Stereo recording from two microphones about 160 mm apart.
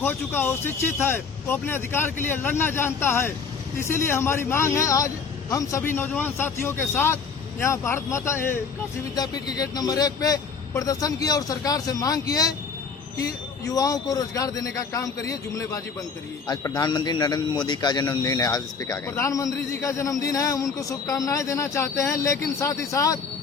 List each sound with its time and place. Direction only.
0.0 s a man's voice: 15° left (ahead or behind)